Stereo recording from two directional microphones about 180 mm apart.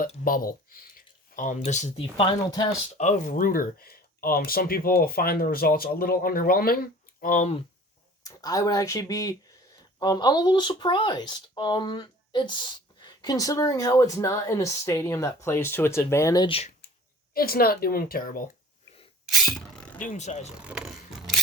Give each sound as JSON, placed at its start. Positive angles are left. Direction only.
{"t": 0.3, "sound": "speech", "side_deg": 50}
{"t": 3.0, "sound": "speech", "side_deg": 45}
{"t": 8.2, "sound": "speech", "side_deg": 20}
{"t": 17.3, "sound": "speech", "side_deg": 55}
{"t": 19.3, "sound": "beatboxing", "side_deg": 0}
{"t": 20.0, "sound": "speech", "side_deg": 45}
{"t": 20.6, "sound": "a sound", "side_deg": -5}